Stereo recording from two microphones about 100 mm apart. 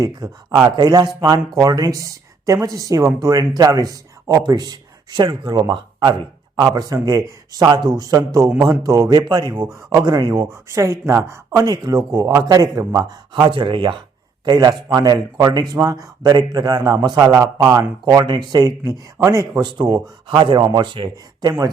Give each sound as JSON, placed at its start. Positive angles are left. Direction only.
{"t": 0.0, "sound": "speech", "side_deg": -35}
{"t": 6.6, "sound": "speech", "side_deg": -40}
{"t": 9.2, "sound": "speech", "side_deg": -50}
{"t": 10.5, "sound": "speech", "side_deg": -30}
{"t": 14.4, "sound": "speech", "side_deg": -45}
{"t": 19.6, "sound": "speech", "side_deg": -50}